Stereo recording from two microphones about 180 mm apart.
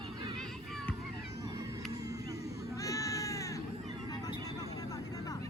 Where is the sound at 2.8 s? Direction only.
20° left (ahead or behind).